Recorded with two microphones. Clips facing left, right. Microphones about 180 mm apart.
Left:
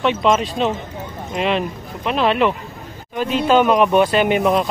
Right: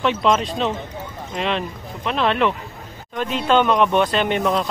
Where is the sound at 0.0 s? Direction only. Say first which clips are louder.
Left 2 dB; centre (ahead or behind).